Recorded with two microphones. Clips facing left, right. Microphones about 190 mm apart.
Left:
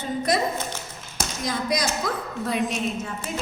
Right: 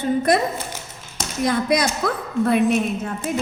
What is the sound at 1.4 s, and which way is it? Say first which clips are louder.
Speech: right 7 dB; 60° right (ahead or behind).